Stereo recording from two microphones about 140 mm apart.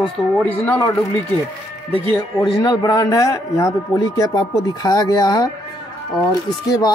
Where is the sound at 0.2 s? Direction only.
5° left (ahead or behind).